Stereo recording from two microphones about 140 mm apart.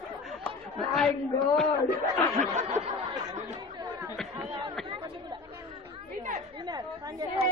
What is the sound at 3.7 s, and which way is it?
Chatter, 25° right (ahead or behind).